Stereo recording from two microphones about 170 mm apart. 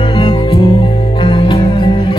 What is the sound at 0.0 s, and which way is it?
Music, 30° left (ahead or behind).